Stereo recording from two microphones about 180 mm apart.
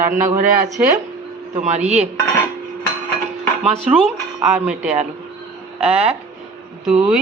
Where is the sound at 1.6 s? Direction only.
40° right (ahead or behind).